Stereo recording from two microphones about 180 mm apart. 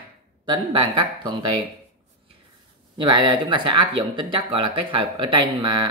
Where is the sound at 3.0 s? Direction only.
25° right (ahead or behind).